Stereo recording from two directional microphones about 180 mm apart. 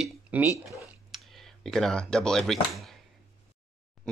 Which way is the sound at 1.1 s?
Centre (ahead or behind).